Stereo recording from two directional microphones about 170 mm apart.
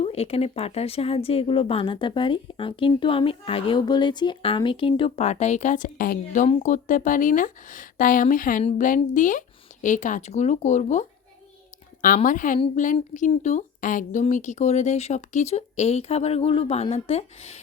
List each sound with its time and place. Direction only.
0.0 s speech: 35° left (ahead or behind)
12.0 s speech: 50° left (ahead or behind)